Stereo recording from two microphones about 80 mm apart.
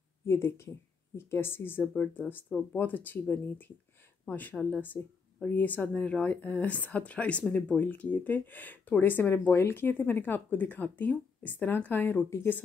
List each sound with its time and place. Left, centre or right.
0.3 s speech: left